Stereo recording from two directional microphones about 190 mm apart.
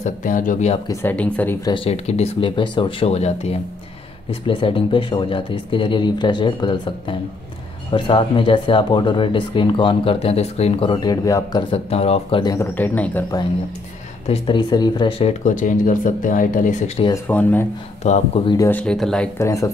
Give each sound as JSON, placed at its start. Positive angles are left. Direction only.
{"t": 0.0, "sound": "speech", "side_deg": 45}
{"t": 0.8, "sound": "speech", "side_deg": 10}
{"t": 1.7, "sound": "speech", "side_deg": 35}
{"t": 11.7, "sound": "speech", "side_deg": 30}
{"t": 12.5, "sound": "speech", "side_deg": 10}
{"t": 14.2, "sound": "speech", "side_deg": 30}
{"t": 17.1, "sound": "speech", "side_deg": 10}
{"t": 18.0, "sound": "speech", "side_deg": 35}
{"t": 18.7, "sound": "speech", "side_deg": 5}